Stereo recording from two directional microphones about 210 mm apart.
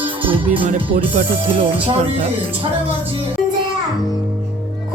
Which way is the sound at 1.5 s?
25° right (ahead or behind).